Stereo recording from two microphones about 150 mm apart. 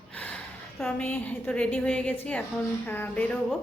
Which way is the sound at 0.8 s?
10° left (ahead or behind).